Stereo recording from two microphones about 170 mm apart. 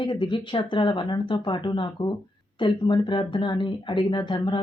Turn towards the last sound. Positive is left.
turn(degrees=30)  # may be behind; listen again after turning